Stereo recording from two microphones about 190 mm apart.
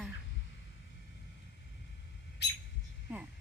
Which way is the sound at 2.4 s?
60° left (ahead or behind).